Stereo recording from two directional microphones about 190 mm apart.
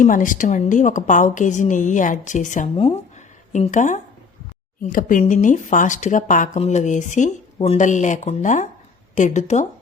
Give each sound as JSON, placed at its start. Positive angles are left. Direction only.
{"t": 0.0, "sound": "speech", "side_deg": 45}